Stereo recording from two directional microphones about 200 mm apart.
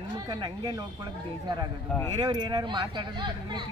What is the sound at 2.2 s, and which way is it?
Speech, 20° right (ahead or behind).